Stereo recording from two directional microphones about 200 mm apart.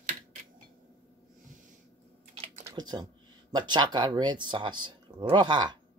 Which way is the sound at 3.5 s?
20° right (ahead or behind).